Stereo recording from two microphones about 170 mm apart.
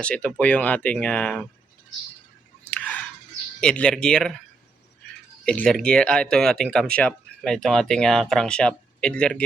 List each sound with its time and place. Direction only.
0.0 s speech: 5° left (ahead or behind)
2.6 s chewing: 10° left (ahead or behind)
3.6 s speech: 5° left (ahead or behind)
5.5 s speech: 5° left (ahead or behind)